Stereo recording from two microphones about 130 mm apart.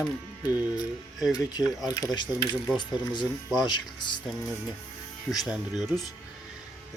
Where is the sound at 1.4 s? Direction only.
30° left (ahead or behind).